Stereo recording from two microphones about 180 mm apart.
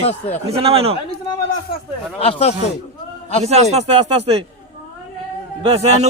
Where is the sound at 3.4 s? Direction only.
35° right (ahead or behind).